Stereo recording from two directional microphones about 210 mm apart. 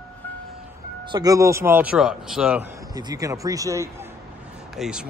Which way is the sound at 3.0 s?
15° right (ahead or behind).